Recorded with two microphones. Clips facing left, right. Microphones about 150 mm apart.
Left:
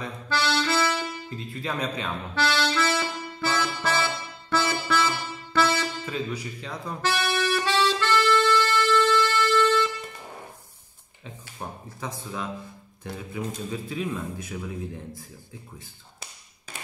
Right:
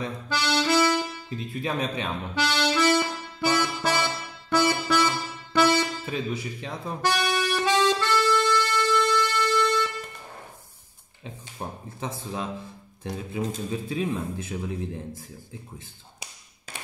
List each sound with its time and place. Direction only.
0.3 s music: 15° right (ahead or behind)
5.5 s speech: 15° right (ahead or behind)
7.3 s music: 15° right (ahead or behind)
11.6 s speech: 25° right (ahead or behind)